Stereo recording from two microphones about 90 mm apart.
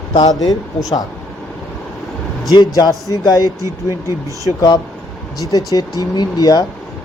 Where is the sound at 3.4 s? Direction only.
40° right (ahead or behind).